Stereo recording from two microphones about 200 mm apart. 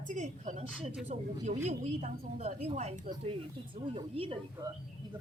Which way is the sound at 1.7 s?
35° right (ahead or behind).